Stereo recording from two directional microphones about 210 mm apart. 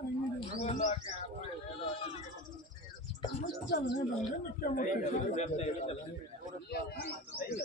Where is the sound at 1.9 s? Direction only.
25° left (ahead or behind).